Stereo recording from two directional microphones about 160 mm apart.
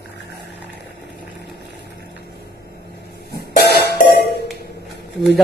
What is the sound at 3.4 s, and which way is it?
Music, 85° left.